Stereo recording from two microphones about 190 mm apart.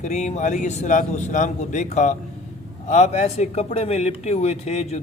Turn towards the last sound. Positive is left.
turn(degrees=35)  # may be behind; listen again after turning